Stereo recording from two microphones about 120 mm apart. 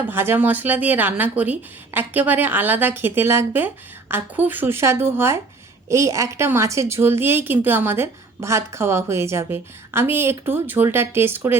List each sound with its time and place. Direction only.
0.0 s a woman's voice: 20° right (ahead or behind)